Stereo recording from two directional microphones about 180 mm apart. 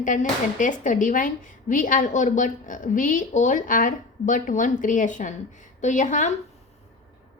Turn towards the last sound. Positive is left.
turn(degrees=45)  # may be behind; listen again after turning